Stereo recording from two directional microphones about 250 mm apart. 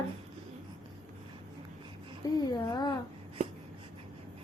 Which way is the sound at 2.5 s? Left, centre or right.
Centre.